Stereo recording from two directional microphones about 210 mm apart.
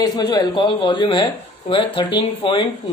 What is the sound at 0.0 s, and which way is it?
Speech, 20° left (ahead or behind).